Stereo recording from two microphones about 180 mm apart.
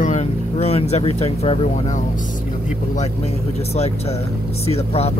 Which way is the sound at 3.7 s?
35° left (ahead or behind).